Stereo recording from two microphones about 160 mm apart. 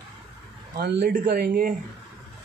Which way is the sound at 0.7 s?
70° right (ahead or behind).